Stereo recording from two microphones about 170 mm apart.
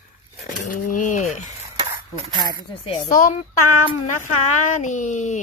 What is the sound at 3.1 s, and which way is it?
Speech, 50° left (ahead or behind).